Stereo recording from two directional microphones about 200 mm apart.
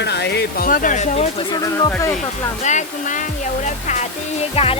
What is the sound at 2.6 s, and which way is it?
Speech, 40° left (ahead or behind).